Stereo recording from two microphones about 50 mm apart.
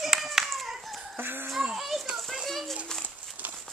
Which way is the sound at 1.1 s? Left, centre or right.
Right.